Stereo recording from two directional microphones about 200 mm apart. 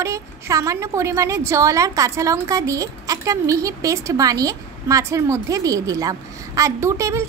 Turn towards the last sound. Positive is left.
turn(degrees=-15)  # may be behind; listen again after turning